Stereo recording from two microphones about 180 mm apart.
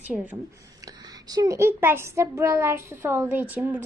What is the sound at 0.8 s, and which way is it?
A child's voice, 20° right (ahead or behind).